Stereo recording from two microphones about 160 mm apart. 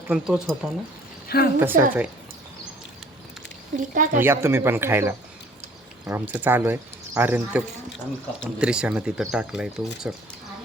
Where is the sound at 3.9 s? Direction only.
55° right (ahead or behind).